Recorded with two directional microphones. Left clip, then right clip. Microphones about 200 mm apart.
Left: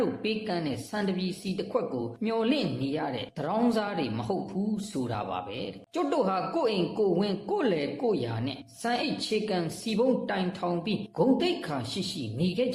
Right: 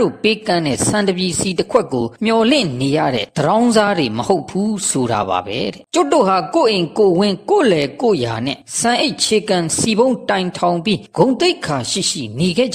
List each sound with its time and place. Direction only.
0.0 s speech: 45° right (ahead or behind)